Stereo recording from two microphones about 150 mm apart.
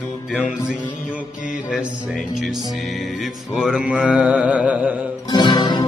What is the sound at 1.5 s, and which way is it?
Music, 5° right (ahead or behind).